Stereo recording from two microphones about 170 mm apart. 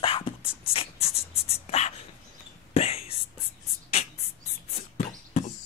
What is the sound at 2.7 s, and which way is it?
Whispering, 35° left (ahead or behind).